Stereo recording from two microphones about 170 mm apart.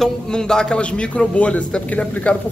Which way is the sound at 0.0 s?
5° left (ahead or behind).